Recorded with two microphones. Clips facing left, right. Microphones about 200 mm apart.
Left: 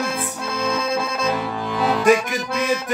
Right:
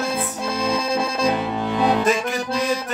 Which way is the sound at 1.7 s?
25° right (ahead or behind).